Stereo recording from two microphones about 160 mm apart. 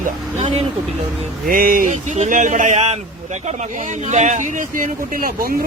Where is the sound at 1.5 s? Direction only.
60° right (ahead or behind); by 3.0 s 40° right (ahead or behind).